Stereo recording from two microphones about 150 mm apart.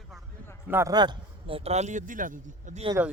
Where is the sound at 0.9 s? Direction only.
30° right (ahead or behind); by 2.8 s 60° right (ahead or behind).